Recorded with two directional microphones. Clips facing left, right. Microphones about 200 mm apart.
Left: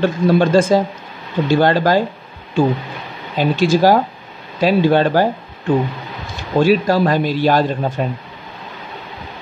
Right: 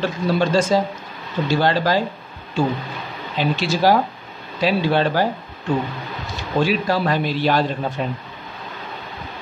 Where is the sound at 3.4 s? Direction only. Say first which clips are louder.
Left 6 dB; 45° left (ahead or behind).